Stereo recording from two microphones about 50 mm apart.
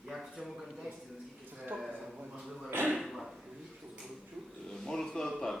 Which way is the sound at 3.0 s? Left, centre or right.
Centre.